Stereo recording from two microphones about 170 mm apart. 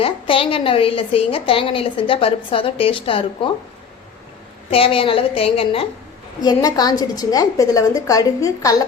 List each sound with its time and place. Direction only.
0.0 s a woman's voice: 30° left (ahead or behind)
4.7 s a woman's voice: 35° left (ahead or behind)